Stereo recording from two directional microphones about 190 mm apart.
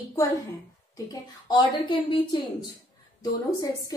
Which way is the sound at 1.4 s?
25° left (ahead or behind).